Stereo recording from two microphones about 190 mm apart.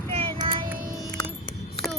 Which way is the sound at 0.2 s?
30° right (ahead or behind).